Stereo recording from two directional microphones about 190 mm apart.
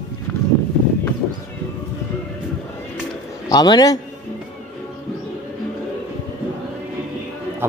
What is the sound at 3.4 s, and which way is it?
Speech, 20° left (ahead or behind).